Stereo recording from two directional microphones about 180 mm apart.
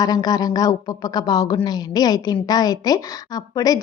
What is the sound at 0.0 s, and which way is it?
Speech, 20° left (ahead or behind).